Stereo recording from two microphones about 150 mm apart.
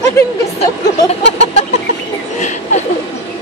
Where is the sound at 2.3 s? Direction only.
55° left (ahead or behind).